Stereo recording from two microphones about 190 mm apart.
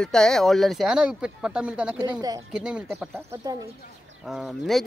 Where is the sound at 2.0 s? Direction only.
20° right (ahead or behind).